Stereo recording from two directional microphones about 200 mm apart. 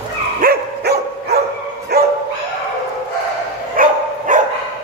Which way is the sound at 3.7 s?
40° right (ahead or behind).